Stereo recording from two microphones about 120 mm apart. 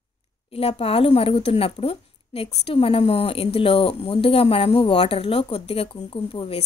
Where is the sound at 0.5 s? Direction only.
55° left (ahead or behind).